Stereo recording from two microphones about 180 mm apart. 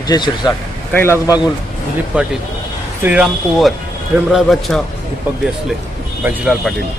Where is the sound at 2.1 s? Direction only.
5° right (ahead or behind).